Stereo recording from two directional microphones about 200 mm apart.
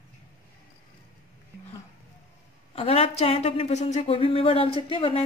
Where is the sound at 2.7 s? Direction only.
30° left (ahead or behind).